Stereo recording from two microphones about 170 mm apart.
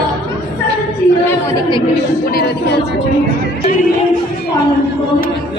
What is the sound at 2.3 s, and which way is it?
Music, 65° left (ahead or behind).